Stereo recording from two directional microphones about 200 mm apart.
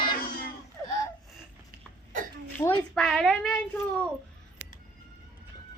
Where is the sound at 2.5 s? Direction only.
5° left (ahead or behind).